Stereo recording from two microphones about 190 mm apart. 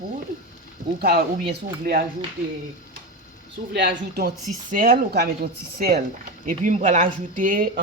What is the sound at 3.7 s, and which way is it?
Speech, 65° right (ahead or behind).